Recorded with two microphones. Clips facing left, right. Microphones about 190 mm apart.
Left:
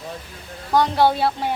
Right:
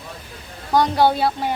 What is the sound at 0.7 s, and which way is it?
Speech, centre (ahead or behind).